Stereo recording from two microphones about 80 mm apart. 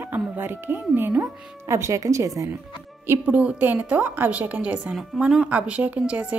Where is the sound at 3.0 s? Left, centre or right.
Right.